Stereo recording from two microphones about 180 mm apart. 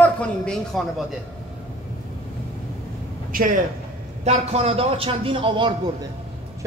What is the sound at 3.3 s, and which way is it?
Speech, 50° right (ahead or behind).